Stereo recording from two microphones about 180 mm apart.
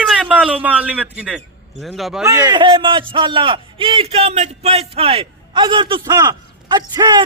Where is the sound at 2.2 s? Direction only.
20° right (ahead or behind).